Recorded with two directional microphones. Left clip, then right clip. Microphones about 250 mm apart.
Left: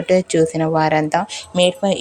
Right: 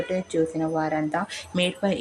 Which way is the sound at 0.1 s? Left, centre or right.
Left.